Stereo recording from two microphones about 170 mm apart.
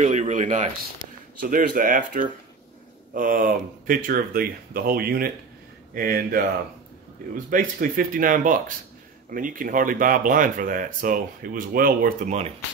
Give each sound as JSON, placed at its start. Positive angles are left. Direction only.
{"t": 0.0, "sound": "speech", "side_deg": -45}
{"t": 1.4, "sound": "speech", "side_deg": -55}
{"t": 7.4, "sound": "speech", "side_deg": -55}